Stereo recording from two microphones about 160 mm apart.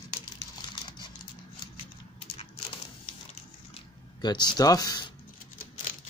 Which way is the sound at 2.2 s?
35° left (ahead or behind).